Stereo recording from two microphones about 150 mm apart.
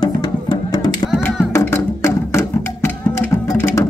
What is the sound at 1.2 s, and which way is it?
Music, 15° left (ahead or behind).